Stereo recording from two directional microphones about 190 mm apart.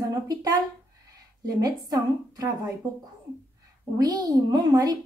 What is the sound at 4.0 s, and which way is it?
A woman's voice, 20° right (ahead or behind).